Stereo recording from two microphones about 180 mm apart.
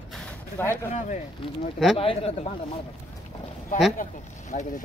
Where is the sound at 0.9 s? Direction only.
45° left (ahead or behind).